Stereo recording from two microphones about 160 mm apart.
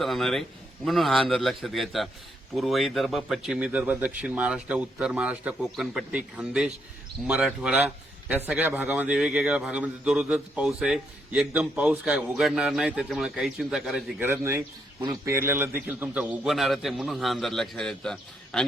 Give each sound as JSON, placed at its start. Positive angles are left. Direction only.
{"t": 0.0, "sound": "a man's voice", "side_deg": 0}
{"t": 14.3, "sound": "a man's voice", "side_deg": -15}